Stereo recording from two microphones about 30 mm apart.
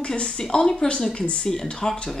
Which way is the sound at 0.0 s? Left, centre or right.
Left.